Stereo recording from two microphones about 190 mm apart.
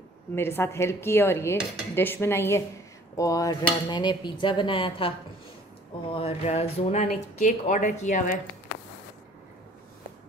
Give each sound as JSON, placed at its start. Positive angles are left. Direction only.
{"t": 0.4, "sound": "dishes", "side_deg": 10}
{"t": 3.9, "sound": "a woman's voice", "side_deg": 25}
{"t": 6.1, "sound": "speech", "side_deg": 35}